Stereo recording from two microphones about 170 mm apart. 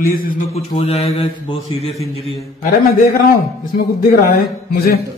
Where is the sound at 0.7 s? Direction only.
35° left (ahead or behind).